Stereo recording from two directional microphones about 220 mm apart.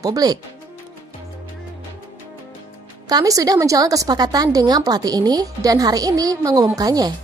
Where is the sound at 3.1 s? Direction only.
15° right (ahead or behind).